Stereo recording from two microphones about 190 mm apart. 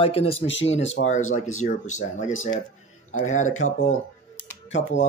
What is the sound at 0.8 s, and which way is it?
Speech, 80° left.